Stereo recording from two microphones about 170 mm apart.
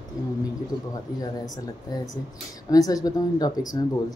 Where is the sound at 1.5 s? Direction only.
20° left (ahead or behind).